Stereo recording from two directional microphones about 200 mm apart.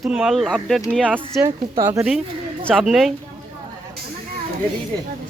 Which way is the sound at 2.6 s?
Centre (ahead or behind).